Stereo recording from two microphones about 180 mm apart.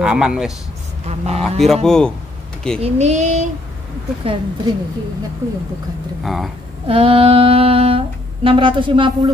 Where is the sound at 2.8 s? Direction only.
40° right (ahead or behind).